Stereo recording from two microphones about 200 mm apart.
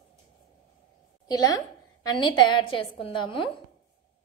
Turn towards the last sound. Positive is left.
turn(degrees=25)  # may be behind; listen again after turning